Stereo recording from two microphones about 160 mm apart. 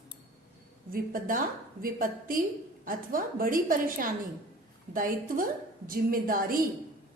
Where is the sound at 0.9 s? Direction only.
60° right (ahead or behind).